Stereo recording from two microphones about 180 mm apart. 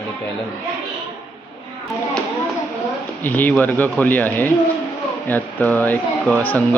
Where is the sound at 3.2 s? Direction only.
10° left (ahead or behind).